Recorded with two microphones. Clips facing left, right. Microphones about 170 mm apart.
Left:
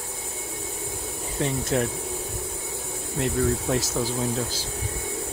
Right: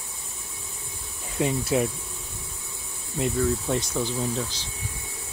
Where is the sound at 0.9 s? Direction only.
65° left (ahead or behind).